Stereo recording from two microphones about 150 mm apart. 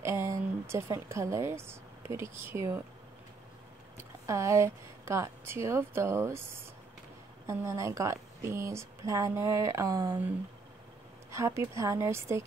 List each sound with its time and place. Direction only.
0.0 s speech: 20° right (ahead or behind)
4.3 s a woman's voice: 20° right (ahead or behind)
11.3 s a woman's voice: 20° right (ahead or behind)